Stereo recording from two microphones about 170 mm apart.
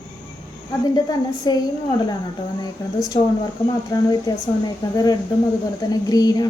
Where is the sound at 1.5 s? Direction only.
25° left (ahead or behind).